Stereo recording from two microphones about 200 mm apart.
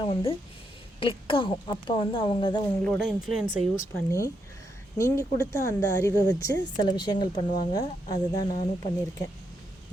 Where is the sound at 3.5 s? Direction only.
40° left (ahead or behind).